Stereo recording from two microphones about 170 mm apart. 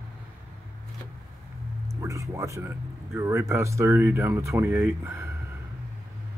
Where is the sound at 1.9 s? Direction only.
20° right (ahead or behind).